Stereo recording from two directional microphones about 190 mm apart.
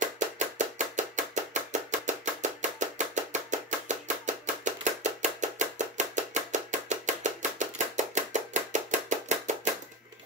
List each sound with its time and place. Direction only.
0.0 s chopping: 40° right (ahead or behind)